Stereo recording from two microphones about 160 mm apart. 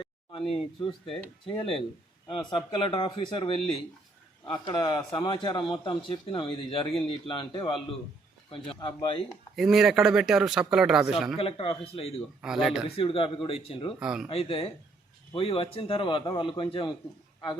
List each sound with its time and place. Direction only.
0.0 s a sound: 35° left (ahead or behind)
1.5 s a man's voice: 35° left (ahead or behind)
9.6 s speech: centre (ahead or behind)
11.3 s a man's voice: 35° left (ahead or behind)
12.4 s speech: 5° right (ahead or behind)
13.0 s a man's voice: 35° left (ahead or behind)
14.0 s speech: 5° right (ahead or behind)
14.3 s a man's voice: 35° left (ahead or behind)